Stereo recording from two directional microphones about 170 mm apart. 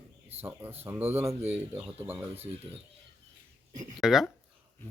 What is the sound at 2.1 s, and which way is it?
Speech, 35° right (ahead or behind).